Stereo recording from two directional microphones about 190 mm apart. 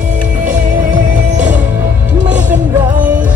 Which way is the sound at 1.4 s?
5° right (ahead or behind).